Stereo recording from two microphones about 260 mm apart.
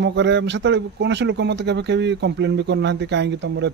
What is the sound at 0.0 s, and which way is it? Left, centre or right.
Speech, right.